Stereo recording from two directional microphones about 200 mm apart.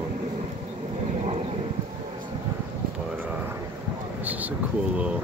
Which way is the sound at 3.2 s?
10° right (ahead or behind).